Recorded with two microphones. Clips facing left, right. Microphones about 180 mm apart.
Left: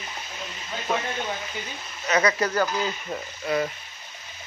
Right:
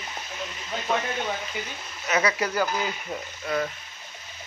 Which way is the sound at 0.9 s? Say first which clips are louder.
Even; 5° left (ahead or behind).